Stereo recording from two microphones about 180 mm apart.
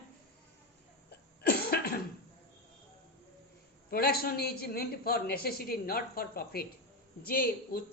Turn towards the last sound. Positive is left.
turn(degrees=55)  # may be behind; listen again after turning